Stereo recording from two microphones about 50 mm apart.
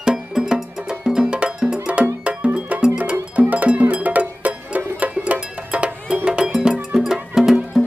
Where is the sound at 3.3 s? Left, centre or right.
Right.